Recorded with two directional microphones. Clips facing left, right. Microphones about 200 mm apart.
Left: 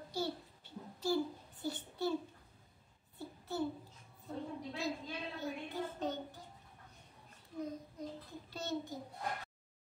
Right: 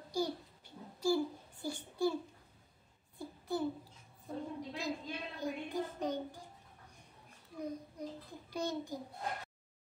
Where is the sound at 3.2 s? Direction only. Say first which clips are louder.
Right 2 dB; 15° right (ahead or behind).